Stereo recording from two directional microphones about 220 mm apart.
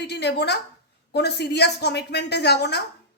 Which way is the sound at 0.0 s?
50° left (ahead or behind).